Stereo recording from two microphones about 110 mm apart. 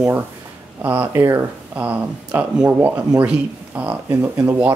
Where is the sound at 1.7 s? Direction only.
10° right (ahead or behind).